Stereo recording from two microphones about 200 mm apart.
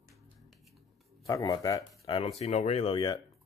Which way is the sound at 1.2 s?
20° left (ahead or behind).